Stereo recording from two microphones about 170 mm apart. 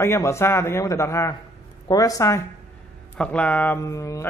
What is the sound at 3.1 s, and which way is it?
A man's voice, 5° left (ahead or behind).